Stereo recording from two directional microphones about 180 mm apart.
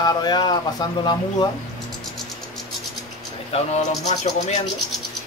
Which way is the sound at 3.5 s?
40° left (ahead or behind).